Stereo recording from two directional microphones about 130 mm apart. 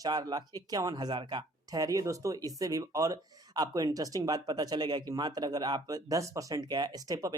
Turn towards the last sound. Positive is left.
turn(degrees=-30)  # may be behind; listen again after turning